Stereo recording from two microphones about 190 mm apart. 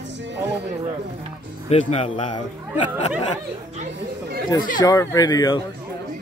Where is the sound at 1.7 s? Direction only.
30° left (ahead or behind).